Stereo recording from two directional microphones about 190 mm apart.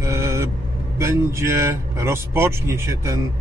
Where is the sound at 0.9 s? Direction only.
15° right (ahead or behind).